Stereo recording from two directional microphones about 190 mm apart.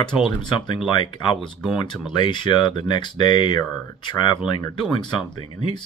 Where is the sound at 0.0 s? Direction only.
25° left (ahead or behind).